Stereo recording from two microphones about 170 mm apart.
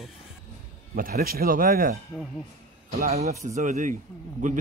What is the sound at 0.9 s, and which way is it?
Speech, 60° right (ahead or behind).